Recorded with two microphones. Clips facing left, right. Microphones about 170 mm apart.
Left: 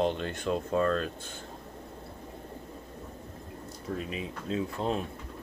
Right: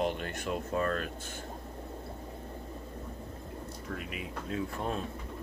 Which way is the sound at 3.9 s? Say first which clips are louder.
Left 4 dB; 25° left (ahead or behind).